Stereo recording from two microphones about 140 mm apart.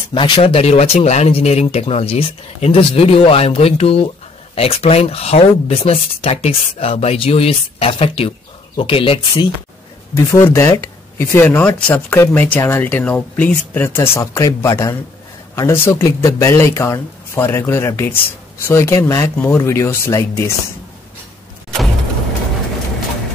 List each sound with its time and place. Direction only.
0.1 s speech: 35° left (ahead or behind)
10.1 s speech: 20° left (ahead or behind)